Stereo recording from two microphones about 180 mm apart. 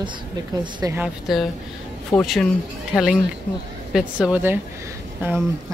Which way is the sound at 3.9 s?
5° right (ahead or behind).